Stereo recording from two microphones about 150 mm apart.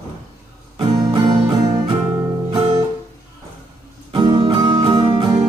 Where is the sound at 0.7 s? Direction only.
25° right (ahead or behind).